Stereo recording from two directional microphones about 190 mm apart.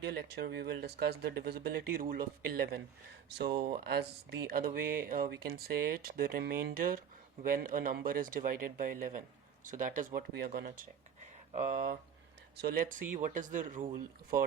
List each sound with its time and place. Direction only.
0.1 s speech: 60° right (ahead or behind); by 10.1 s 45° right (ahead or behind)
10.2 s speech: 60° right (ahead or behind)